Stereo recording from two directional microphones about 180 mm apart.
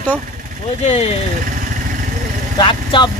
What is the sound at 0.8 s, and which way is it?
Speech, 35° left (ahead or behind).